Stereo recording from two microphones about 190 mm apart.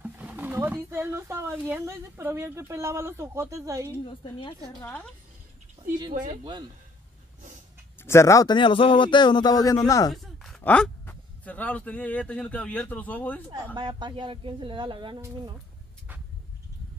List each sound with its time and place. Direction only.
0.0 s speech: 10° right (ahead or behind)
4.0 s speech: 25° left (ahead or behind)
4.8 s a woman's voice: 5° left (ahead or behind)
5.9 s speech: 20° right (ahead or behind)
8.0 s speech: 15° left (ahead or behind)
10.1 s speech: centre (ahead or behind)
13.7 s speech: 25° right (ahead or behind)